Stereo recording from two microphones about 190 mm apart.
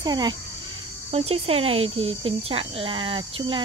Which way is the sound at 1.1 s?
35° right (ahead or behind).